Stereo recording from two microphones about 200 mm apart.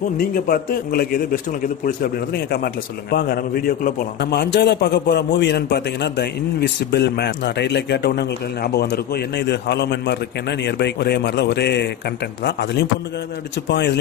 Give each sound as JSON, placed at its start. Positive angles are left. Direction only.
{"t": 0.2, "sound": "a man's voice", "side_deg": 50}